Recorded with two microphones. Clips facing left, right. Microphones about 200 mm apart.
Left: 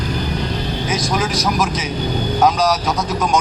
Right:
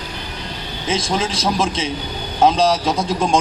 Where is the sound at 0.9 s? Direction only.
25° right (ahead or behind).